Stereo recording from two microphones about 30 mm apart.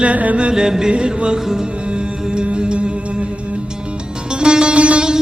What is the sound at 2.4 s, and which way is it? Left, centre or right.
Music, right.